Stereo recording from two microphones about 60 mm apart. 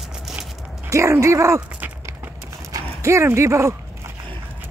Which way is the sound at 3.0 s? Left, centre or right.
Right.